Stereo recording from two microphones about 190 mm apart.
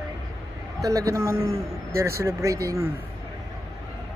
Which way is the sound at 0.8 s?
15° right (ahead or behind).